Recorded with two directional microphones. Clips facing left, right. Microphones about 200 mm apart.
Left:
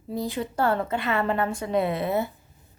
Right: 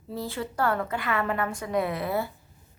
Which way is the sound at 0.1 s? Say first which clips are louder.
Left 4 dB; 15° left (ahead or behind).